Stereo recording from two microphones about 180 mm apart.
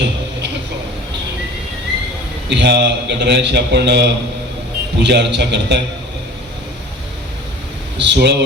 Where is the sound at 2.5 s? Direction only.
70° right (ahead or behind).